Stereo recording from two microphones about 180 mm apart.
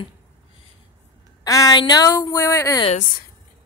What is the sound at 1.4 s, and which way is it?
Speech, 20° left (ahead or behind).